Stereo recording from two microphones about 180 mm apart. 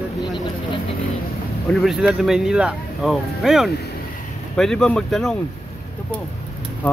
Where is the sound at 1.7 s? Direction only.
Centre (ahead or behind).